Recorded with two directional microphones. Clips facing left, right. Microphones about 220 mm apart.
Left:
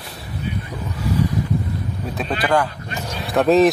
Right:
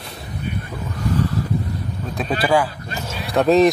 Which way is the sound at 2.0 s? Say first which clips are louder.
Right 2 dB; centre (ahead or behind).